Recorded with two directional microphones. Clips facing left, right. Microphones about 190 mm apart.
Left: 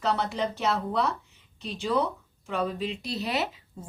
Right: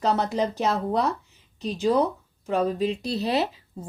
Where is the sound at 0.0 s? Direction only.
40° right (ahead or behind).